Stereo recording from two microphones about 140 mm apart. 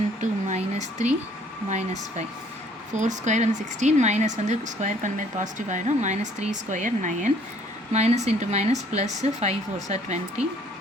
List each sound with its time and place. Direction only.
0.2 s speech: 55° right (ahead or behind)
7.9 s speech: 50° right (ahead or behind)